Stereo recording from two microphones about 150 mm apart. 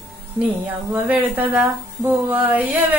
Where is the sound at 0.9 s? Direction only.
10° right (ahead or behind).